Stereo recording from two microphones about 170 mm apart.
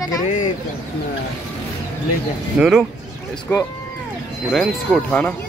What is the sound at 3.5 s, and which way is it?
Speech, 15° left (ahead or behind).